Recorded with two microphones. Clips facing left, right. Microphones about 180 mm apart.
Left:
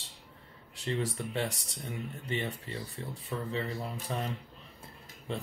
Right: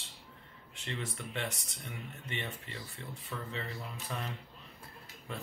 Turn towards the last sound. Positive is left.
turn(degrees=30)  # may be behind; listen again after turning